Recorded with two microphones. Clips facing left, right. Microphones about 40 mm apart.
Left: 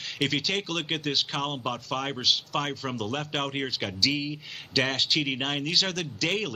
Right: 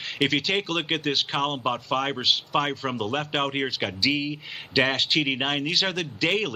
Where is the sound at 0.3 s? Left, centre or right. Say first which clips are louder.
Right 4 dB; centre.